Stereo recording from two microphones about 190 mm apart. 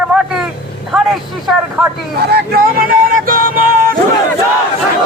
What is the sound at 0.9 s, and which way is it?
Vehicle, centre (ahead or behind).